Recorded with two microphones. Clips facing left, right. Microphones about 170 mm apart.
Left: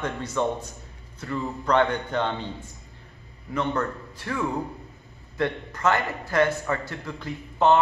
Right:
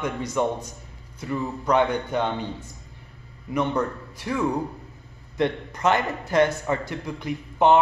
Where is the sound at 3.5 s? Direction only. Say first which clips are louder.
Right 2 dB; 15° right (ahead or behind).